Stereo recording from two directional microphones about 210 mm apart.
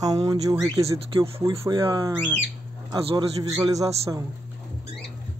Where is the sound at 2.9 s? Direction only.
25° right (ahead or behind).